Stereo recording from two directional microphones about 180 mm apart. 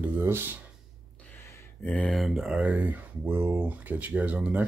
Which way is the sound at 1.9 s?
5° left (ahead or behind).